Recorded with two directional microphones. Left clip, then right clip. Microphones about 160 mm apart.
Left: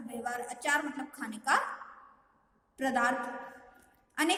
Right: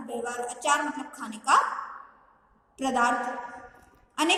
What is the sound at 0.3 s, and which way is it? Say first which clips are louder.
A woman's voice: right 5 dB; 50° left (ahead or behind).